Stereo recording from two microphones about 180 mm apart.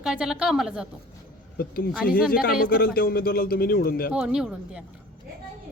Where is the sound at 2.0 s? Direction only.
55° left (ahead or behind).